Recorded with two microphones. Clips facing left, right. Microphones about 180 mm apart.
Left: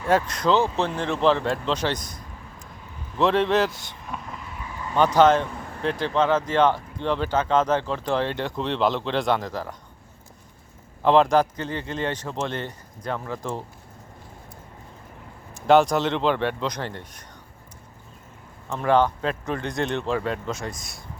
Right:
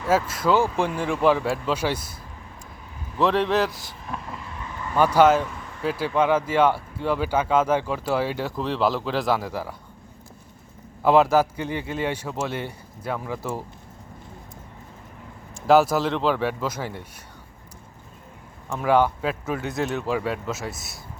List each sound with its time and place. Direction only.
0.0 s speech: 5° right (ahead or behind)
11.0 s speech: 5° right (ahead or behind)
15.6 s speech: 5° right (ahead or behind)
18.7 s speech: 10° right (ahead or behind)